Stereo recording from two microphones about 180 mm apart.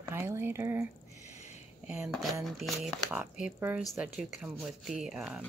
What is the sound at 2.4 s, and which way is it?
Speech, centre (ahead or behind).